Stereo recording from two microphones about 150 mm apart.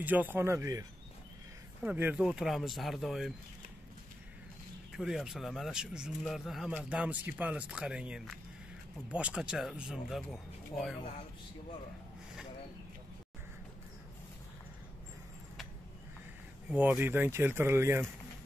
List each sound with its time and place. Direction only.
0.0 s speech: 10° right (ahead or behind)
4.9 s speech: 5° right (ahead or behind)
16.6 s speech: 10° right (ahead or behind)